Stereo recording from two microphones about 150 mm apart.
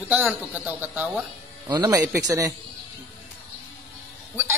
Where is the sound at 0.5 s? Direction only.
10° right (ahead or behind).